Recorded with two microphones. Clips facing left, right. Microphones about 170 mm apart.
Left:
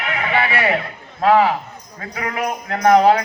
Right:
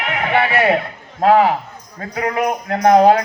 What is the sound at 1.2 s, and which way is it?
A man's voice, 45° right (ahead or behind).